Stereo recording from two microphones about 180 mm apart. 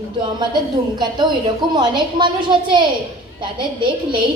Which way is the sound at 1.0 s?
25° right (ahead or behind).